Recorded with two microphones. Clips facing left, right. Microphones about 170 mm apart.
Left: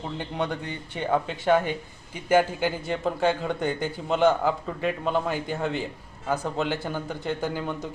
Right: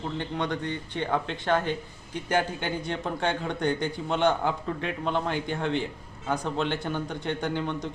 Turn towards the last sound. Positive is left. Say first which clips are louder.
# even
turn(degrees=5)  # may be behind; listen again after turning